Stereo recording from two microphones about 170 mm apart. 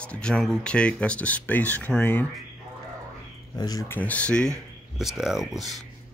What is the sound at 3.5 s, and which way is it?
Speech, 20° left (ahead or behind).